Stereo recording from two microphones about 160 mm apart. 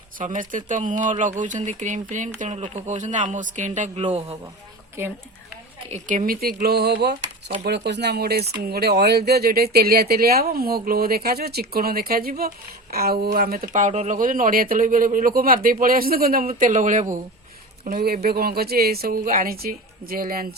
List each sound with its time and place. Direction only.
0.2 s a man's voice: 55° right (ahead or behind); by 4.4 s 40° right (ahead or behind)
5.0 s a woman's voice: 15° right (ahead or behind)
5.9 s speech: 55° right (ahead or behind)
16.6 s a man's voice: 55° right (ahead or behind)
17.8 s speech: 70° right (ahead or behind)